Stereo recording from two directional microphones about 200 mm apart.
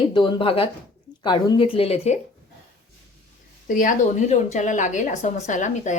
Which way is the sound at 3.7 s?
40° left (ahead or behind).